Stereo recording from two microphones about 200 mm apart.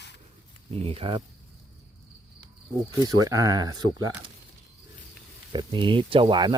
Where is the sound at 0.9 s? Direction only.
25° right (ahead or behind).